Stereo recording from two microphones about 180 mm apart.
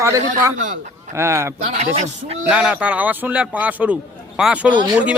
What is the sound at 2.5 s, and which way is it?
A man's voice, 5° right (ahead or behind).